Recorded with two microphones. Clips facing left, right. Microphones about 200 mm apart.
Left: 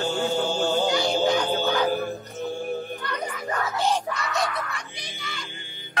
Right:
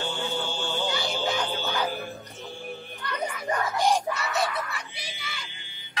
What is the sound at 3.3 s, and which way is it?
Music, 15° right (ahead or behind).